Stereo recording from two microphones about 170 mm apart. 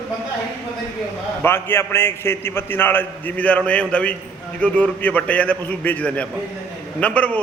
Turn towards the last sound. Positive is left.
turn(degrees=5)  # may be behind; listen again after turning